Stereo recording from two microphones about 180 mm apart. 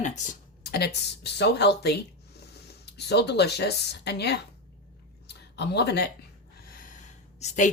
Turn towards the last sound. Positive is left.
turn(degrees=40)  # may be behind; listen again after turning